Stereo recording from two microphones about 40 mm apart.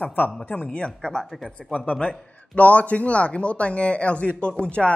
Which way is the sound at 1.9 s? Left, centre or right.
Left.